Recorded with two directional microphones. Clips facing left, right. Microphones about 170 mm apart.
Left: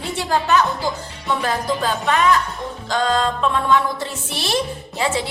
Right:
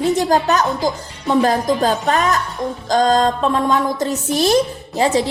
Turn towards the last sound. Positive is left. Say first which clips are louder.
# right 6 dB
turn(degrees=-40)  # may be behind; listen again after turning